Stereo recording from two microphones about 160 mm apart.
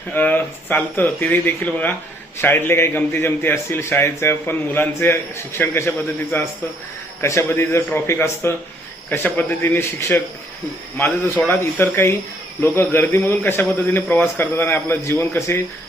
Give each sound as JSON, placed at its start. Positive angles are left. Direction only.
{"t": 0.1, "sound": "a man's voice", "side_deg": 10}